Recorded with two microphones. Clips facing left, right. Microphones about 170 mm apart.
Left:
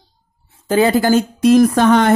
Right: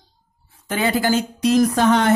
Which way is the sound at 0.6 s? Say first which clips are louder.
Left 7 dB; 35° left (ahead or behind).